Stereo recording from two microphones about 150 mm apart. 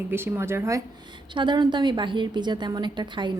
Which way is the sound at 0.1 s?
15° right (ahead or behind).